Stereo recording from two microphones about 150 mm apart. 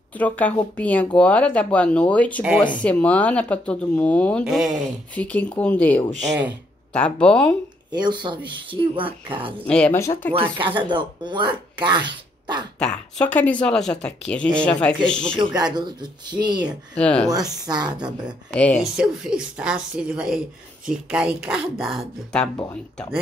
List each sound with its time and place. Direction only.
0.2 s speech: 10° left (ahead or behind)
4.5 s a woman's voice: centre (ahead or behind)
5.1 s speech: 10° left (ahead or behind)
7.9 s speech: 30° right (ahead or behind)
9.7 s speech: 5° left (ahead or behind)
9.9 s speech: 20° left (ahead or behind)
10.3 s speech: 35° right (ahead or behind)
12.7 s a woman's voice: 5° left (ahead or behind)
15.3 s speech: 30° right (ahead or behind)
16.9 s speech: 5° left (ahead or behind)
17.6 s speech: 30° right (ahead or behind)
18.5 s speech: 10° left (ahead or behind)
18.9 s a woman's voice: 5° right (ahead or behind)